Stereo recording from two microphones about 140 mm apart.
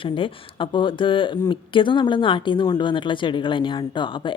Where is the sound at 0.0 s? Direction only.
40° left (ahead or behind).